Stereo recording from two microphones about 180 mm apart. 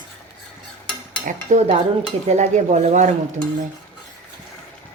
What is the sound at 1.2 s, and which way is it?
Dishes, 40° right (ahead or behind).